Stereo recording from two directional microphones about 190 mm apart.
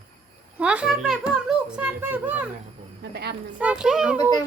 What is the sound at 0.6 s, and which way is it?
A child's voice, 5° right (ahead or behind).